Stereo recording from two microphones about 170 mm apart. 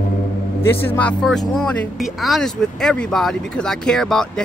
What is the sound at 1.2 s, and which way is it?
Speech, centre (ahead or behind).